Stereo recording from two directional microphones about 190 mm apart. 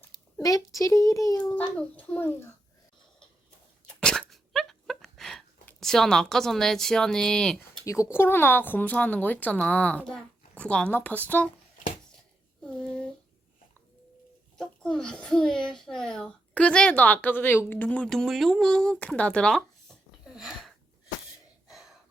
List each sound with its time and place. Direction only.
0.3 s a child's voice: 20° left (ahead or behind)
1.5 s a woman's voice: 5° left (ahead or behind)
3.8 s a sound: 5° left (ahead or behind)
7.9 s a woman's voice: 15° left (ahead or behind)
12.6 s a sound: 5° left (ahead or behind)
14.6 s a child's voice: 5° left (ahead or behind)
20.2 s wheeze: 5° right (ahead or behind)